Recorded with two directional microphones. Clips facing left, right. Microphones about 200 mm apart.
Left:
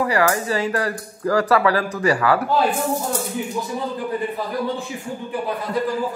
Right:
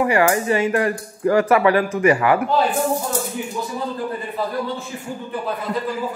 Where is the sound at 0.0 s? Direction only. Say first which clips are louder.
Right 2 dB; 25° right (ahead or behind).